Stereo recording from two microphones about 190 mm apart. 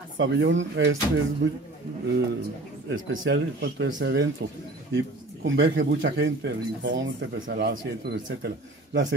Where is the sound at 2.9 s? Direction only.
65° right (ahead or behind).